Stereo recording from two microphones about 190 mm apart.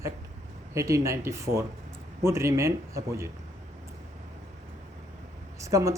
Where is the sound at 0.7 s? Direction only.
15° right (ahead or behind).